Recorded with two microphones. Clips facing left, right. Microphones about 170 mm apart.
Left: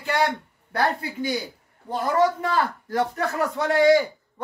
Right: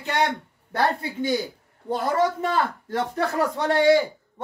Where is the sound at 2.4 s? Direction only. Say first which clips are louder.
Even; 25° right (ahead or behind).